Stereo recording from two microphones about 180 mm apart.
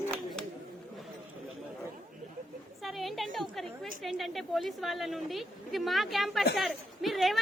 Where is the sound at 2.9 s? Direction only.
Centre (ahead or behind).